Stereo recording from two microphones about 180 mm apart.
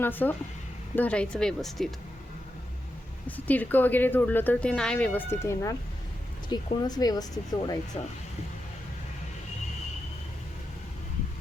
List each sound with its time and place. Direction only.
0.0 s a woman's voice: 10° left (ahead or behind)
3.2 s a woman's voice: 10° left (ahead or behind); by 8.1 s 30° left (ahead or behind)